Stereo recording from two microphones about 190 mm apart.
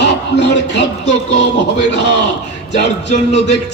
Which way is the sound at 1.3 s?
65° left (ahead or behind).